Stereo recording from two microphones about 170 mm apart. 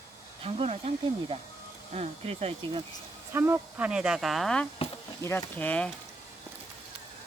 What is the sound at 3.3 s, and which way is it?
Speech, 10° right (ahead or behind).